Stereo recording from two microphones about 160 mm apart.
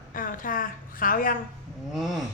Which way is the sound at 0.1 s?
60° left (ahead or behind).